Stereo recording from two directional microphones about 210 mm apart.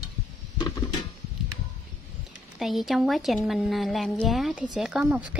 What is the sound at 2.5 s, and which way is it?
A woman's voice, centre (ahead or behind).